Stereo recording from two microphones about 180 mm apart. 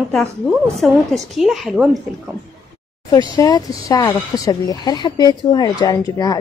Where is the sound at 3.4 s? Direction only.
20° left (ahead or behind).